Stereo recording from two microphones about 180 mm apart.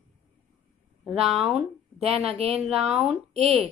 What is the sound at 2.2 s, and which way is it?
Speech, 35° right (ahead or behind).